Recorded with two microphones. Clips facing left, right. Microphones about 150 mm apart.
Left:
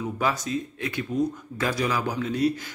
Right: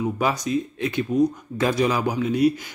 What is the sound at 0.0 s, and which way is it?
A man's voice, 15° right (ahead or behind).